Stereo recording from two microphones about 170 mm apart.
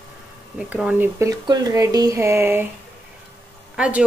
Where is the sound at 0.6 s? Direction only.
5° right (ahead or behind).